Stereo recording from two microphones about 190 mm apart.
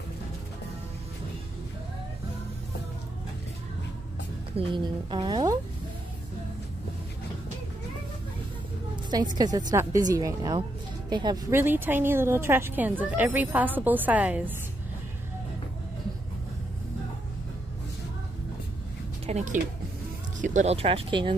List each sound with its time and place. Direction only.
4.6 s a woman's voice: 25° right (ahead or behind)
8.9 s a woman's voice: 20° right (ahead or behind)
19.2 s speech: 35° right (ahead or behind)